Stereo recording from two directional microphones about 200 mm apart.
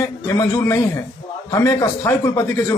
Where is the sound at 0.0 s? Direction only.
15° left (ahead or behind).